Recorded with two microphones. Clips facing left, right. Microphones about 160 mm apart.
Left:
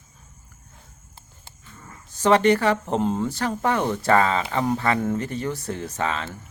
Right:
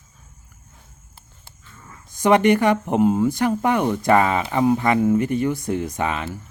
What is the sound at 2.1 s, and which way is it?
Speech, 15° right (ahead or behind).